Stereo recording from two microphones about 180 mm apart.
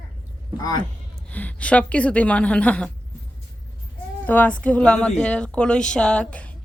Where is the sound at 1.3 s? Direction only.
10° left (ahead or behind).